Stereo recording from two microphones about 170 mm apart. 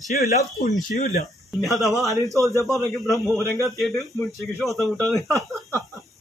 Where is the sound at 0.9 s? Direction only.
55° left (ahead or behind).